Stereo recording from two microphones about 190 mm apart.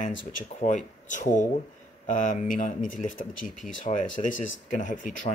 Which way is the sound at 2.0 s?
45° left (ahead or behind).